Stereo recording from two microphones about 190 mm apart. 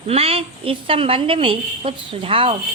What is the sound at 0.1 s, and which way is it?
A woman's voice, 30° right (ahead or behind).